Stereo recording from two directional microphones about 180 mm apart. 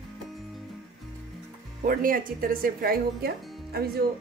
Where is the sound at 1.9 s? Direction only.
50° right (ahead or behind).